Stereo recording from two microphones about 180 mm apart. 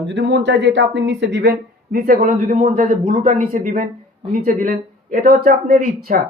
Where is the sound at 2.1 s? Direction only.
40° right (ahead or behind).